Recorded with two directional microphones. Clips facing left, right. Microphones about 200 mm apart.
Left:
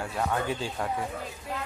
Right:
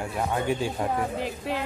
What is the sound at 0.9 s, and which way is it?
Speech, 70° right (ahead or behind).